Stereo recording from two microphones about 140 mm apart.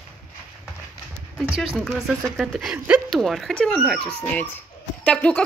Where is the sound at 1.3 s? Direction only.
Centre (ahead or behind).